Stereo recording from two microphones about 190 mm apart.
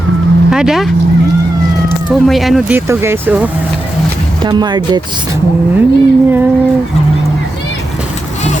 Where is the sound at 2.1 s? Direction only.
Centre (ahead or behind).